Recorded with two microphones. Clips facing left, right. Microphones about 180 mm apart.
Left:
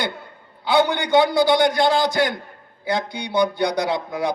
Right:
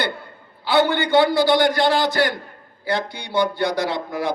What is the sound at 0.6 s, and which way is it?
A man's voice, 15° left (ahead or behind).